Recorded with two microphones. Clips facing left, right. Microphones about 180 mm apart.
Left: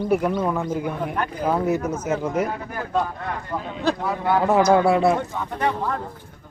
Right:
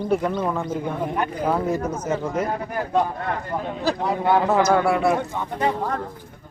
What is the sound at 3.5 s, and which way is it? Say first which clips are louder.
Speech: even; 20° right (ahead or behind).